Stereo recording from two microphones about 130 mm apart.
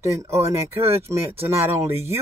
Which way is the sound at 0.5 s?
20° right (ahead or behind).